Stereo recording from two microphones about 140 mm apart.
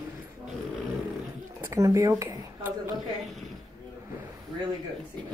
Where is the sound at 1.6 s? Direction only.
20° right (ahead or behind).